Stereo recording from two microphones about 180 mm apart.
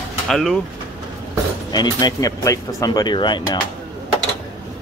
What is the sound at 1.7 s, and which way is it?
Speech, 20° left (ahead or behind).